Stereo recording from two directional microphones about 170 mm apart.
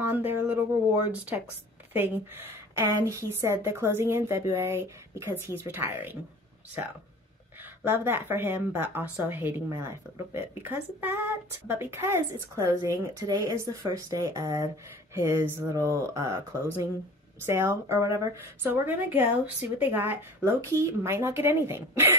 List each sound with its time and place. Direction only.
0.0 s a woman's voice: 10° right (ahead or behind)
7.8 s a woman's voice: 15° right (ahead or behind)